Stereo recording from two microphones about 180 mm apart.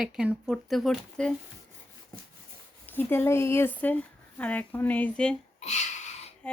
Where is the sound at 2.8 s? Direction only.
10° left (ahead or behind).